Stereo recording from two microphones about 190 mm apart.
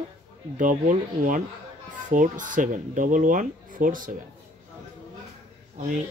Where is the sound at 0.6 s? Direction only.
45° right (ahead or behind).